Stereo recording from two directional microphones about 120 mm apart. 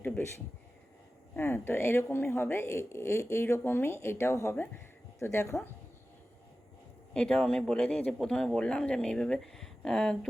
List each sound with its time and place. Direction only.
0.0 s speech: 20° left (ahead or behind)
7.1 s speech: 5° left (ahead or behind)